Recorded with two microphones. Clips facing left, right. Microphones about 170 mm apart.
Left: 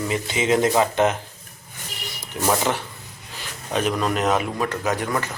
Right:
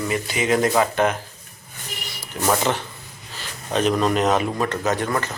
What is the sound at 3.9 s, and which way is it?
A man's voice, centre (ahead or behind).